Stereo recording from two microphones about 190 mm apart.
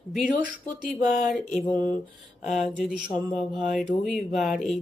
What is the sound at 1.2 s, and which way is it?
Speech, centre (ahead or behind).